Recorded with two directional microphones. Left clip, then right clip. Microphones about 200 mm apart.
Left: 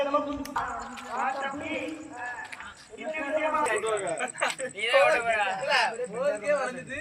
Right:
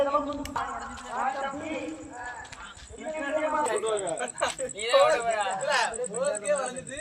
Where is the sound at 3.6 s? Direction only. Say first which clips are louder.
Even; 50° right (ahead or behind); by 6.7 s 20° right (ahead or behind).